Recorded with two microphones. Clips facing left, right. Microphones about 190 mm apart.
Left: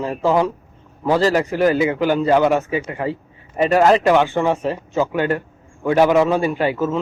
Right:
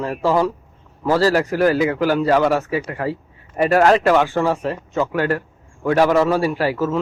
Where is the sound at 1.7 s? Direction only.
Centre (ahead or behind).